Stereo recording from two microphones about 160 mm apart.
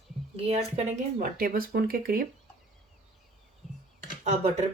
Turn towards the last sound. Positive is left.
turn(degrees=-45)  # may be behind; listen again after turning